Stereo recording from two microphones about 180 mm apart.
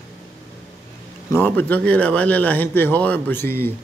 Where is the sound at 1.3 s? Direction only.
10° left (ahead or behind).